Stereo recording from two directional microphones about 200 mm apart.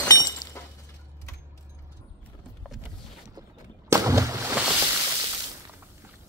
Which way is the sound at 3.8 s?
15° right (ahead or behind).